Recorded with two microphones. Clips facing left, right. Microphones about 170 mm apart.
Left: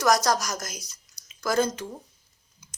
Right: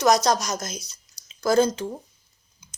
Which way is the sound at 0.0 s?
20° right (ahead or behind).